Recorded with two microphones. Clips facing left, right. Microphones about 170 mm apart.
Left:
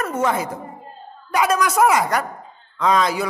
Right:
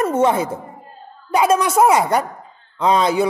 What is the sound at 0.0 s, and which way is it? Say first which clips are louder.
A man's voice: right 5 dB; 30° right (ahead or behind).